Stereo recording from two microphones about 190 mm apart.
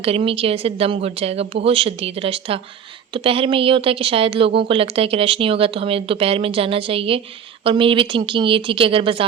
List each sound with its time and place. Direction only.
0.0 s speech: 30° right (ahead or behind)